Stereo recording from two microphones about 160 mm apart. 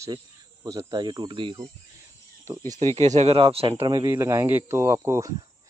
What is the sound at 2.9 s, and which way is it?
Speech, 45° right (ahead or behind).